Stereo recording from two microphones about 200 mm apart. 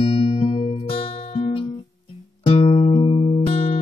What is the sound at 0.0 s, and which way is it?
Music, 30° left (ahead or behind).